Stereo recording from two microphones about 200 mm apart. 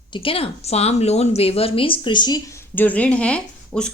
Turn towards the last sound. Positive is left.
turn(degrees=5)  # may be behind; listen again after turning